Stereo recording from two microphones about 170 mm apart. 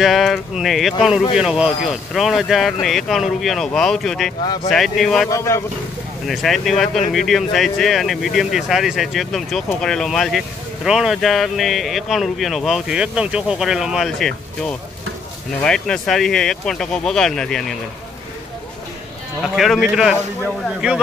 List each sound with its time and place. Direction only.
0.0 s speech: centre (ahead or behind)
5.3 s speech: 15° left (ahead or behind)
6.2 s speech: centre (ahead or behind)
19.5 s speech: centre (ahead or behind)